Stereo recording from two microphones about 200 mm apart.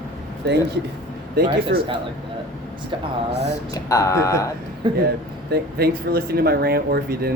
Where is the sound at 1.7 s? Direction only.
50° right (ahead or behind).